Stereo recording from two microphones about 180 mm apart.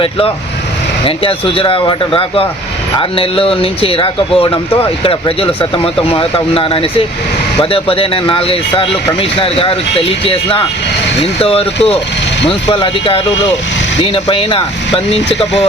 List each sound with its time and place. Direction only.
1.0 s speech: 30° left (ahead or behind)